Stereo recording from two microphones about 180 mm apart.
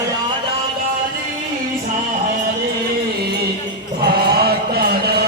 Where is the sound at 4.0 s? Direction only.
60° right (ahead or behind).